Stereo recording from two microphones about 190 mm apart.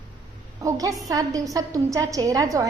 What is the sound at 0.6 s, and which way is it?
A woman's voice, 15° right (ahead or behind).